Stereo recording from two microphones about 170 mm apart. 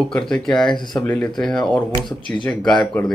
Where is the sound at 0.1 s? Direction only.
5° left (ahead or behind).